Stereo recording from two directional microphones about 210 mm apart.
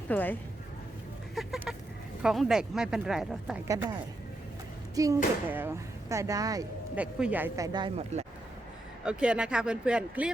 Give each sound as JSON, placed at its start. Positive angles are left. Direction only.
{"t": 0.1, "sound": "speech", "side_deg": 10}
{"t": 1.4, "sound": "a sound", "side_deg": 0}
{"t": 2.2, "sound": "speech", "side_deg": 0}
{"t": 3.7, "sound": "speech", "side_deg": -15}
{"t": 4.9, "sound": "speech", "side_deg": -15}
{"t": 9.0, "sound": "speech", "side_deg": -5}